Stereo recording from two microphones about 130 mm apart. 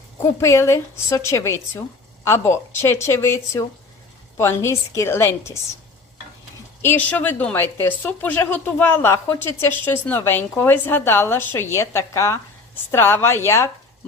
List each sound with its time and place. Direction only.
0.3 s a woman's voice: 20° left (ahead or behind)
6.8 s a woman's voice: 15° left (ahead or behind)